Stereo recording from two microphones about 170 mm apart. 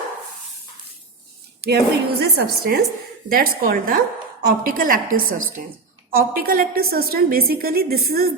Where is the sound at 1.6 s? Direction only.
70° right (ahead or behind).